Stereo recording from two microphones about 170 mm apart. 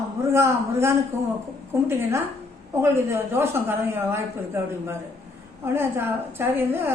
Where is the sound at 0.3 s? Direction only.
15° right (ahead or behind).